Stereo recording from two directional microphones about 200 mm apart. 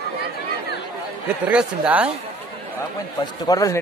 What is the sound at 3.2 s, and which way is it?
Speech, 20° left (ahead or behind).